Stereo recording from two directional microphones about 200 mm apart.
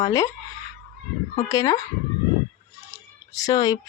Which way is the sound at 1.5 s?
15° left (ahead or behind).